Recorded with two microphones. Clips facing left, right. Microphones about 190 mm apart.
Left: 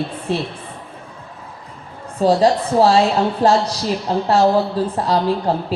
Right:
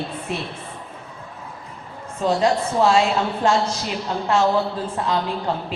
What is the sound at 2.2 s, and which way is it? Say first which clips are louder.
Speech: left 5 dB; 35° left (ahead or behind).